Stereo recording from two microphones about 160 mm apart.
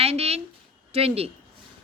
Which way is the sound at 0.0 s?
40° right (ahead or behind).